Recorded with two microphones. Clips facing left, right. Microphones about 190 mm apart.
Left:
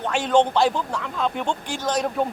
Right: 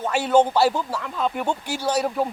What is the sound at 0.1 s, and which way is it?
A man's voice, 10° right (ahead or behind).